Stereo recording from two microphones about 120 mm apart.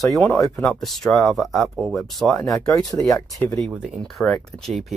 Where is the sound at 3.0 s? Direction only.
25° left (ahead or behind).